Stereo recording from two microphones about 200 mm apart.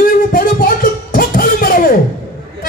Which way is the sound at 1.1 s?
45° left (ahead or behind).